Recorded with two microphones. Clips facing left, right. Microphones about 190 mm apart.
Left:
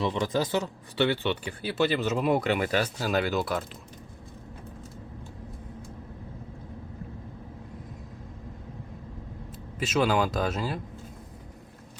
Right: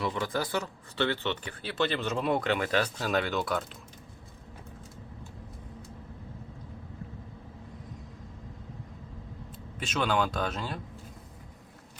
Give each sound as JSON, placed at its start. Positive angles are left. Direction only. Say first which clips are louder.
{"t": 0.0, "sound": "speech", "louder": "left 4 dB", "side_deg": 20}
{"t": 9.7, "sound": "speech", "louder": "left 4 dB", "side_deg": 5}